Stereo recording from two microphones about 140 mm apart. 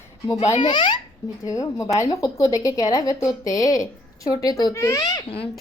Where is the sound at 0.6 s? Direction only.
35° left (ahead or behind).